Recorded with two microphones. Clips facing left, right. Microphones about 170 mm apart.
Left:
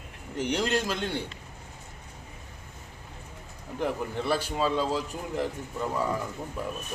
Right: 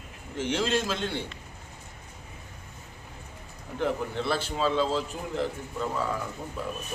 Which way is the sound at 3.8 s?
10° left (ahead or behind).